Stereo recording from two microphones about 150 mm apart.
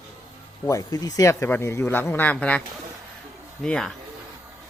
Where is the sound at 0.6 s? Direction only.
20° left (ahead or behind).